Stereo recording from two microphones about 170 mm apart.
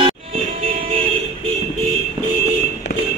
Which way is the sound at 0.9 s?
35° right (ahead or behind).